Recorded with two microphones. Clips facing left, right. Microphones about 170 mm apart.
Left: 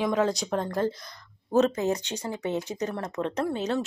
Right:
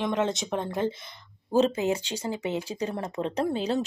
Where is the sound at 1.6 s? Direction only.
25° right (ahead or behind).